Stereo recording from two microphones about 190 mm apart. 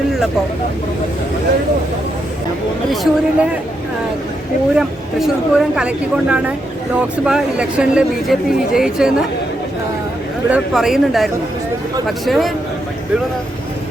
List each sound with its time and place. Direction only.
2.9 s speech: centre (ahead or behind)
4.8 s speech: centre (ahead or behind)
10.5 s speech: centre (ahead or behind)